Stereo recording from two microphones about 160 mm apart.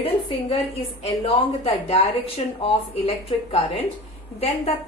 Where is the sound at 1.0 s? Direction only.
35° left (ahead or behind).